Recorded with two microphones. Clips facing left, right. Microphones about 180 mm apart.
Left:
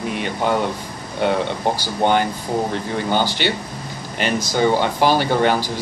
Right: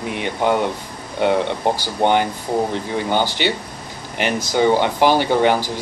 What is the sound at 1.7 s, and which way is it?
Speech, 15° right (ahead or behind).